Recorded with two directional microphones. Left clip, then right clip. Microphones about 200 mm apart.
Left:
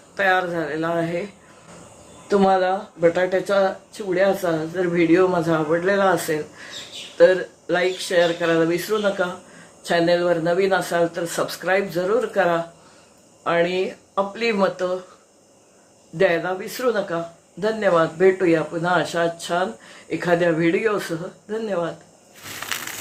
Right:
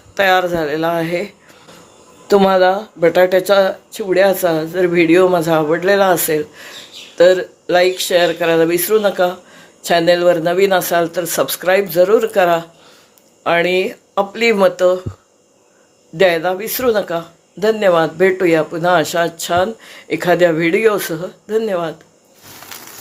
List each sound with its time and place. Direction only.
0.1 s speech: 50° right (ahead or behind)
2.2 s speech: 55° right (ahead or behind)
16.1 s speech: 50° right (ahead or behind)